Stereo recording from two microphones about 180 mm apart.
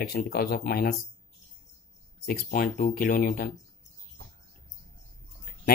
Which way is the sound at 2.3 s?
55° left (ahead or behind).